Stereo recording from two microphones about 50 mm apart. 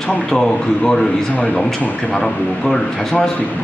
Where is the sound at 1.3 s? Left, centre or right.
Left; by 3.3 s centre.